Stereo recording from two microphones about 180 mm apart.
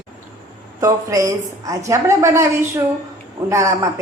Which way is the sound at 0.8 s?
20° right (ahead or behind).